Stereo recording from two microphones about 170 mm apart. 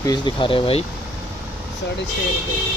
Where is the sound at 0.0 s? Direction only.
25° left (ahead or behind).